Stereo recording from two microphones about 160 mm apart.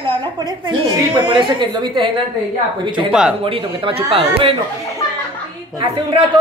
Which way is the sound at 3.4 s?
35° right (ahead or behind).